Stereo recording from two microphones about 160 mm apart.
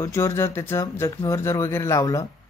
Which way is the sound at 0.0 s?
15° left (ahead or behind).